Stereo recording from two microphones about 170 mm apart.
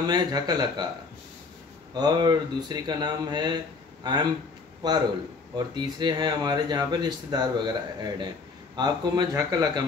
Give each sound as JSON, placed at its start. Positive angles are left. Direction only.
{"t": 0.0, "sound": "speech", "side_deg": -25}
{"t": 2.0, "sound": "speech", "side_deg": -25}